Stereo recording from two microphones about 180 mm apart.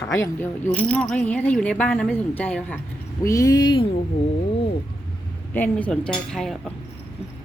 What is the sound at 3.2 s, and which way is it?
Speech, 20° left (ahead or behind).